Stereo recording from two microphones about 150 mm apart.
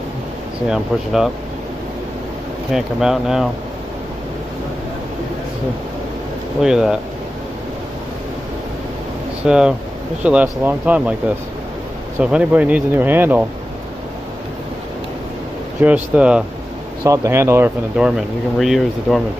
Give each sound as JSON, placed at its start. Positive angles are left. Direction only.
{"t": 0.7, "sound": "speech", "side_deg": 0}
{"t": 2.7, "sound": "speech", "side_deg": -5}
{"t": 6.6, "sound": "speech", "side_deg": -5}
{"t": 9.5, "sound": "speech", "side_deg": -5}
{"t": 12.2, "sound": "speech", "side_deg": -10}
{"t": 15.8, "sound": "speech", "side_deg": -10}
{"t": 17.0, "sound": "speech", "side_deg": -20}
{"t": 17.9, "sound": "speech", "side_deg": -5}